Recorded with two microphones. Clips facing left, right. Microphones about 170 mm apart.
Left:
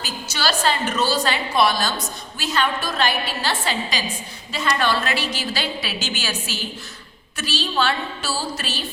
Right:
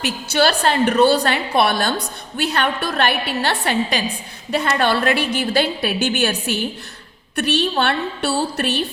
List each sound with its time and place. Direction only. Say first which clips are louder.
0.0 s a woman's voice: right 8 dB; 60° right (ahead or behind)